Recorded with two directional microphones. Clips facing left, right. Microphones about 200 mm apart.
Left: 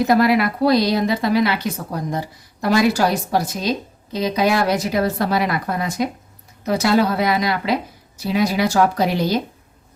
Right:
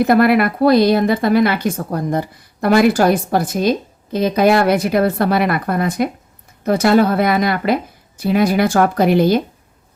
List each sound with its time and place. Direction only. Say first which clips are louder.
0.0 s a woman's voice: right 3 dB; 55° right (ahead or behind)